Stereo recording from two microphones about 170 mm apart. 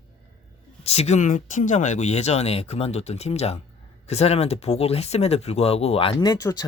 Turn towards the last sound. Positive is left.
turn(degrees=20)  # may be behind; listen again after turning